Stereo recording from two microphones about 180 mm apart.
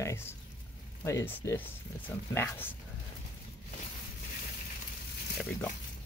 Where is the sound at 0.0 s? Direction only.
15° left (ahead or behind).